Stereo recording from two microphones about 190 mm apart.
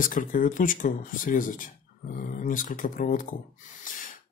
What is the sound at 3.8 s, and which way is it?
Snort, 45° left (ahead or behind).